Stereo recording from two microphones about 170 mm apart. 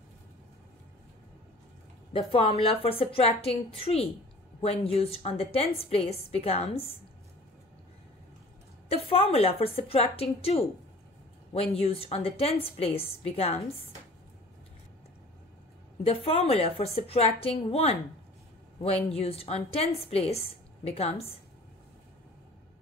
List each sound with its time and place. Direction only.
2.1 s a woman's voice: 35° left (ahead or behind)
8.9 s a woman's voice: 35° left (ahead or behind)
16.3 s a woman's voice: 35° left (ahead or behind)
19.0 s a woman's voice: 35° left (ahead or behind)